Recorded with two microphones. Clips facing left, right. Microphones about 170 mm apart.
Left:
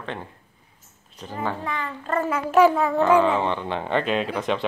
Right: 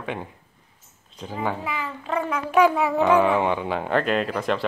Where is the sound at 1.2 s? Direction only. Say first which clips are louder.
Right 1 dB; 10° right (ahead or behind).